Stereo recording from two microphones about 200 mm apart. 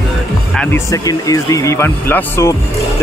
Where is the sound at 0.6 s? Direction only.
15° left (ahead or behind).